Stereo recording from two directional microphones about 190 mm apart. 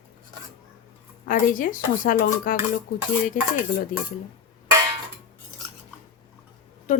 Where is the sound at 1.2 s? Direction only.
45° left (ahead or behind).